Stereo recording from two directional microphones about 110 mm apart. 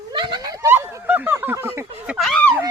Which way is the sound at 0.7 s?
20° right (ahead or behind).